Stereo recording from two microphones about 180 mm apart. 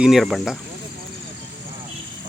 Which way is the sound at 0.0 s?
Centre (ahead or behind).